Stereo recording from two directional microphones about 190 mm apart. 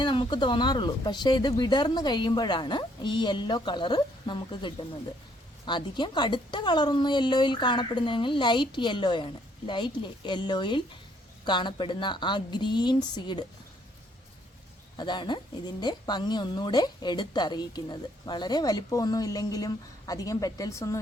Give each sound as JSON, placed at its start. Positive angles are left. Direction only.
{"t": 0.0, "sound": "speech", "side_deg": 25}
{"t": 14.9, "sound": "speech", "side_deg": 25}